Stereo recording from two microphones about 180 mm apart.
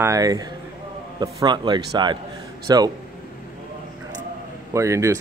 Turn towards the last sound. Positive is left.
turn(degrees=-15)  # may be behind; listen again after turning